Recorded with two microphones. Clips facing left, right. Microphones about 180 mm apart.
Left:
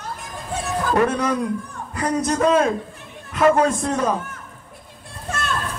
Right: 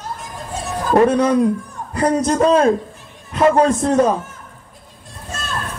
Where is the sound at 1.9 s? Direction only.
30° right (ahead or behind).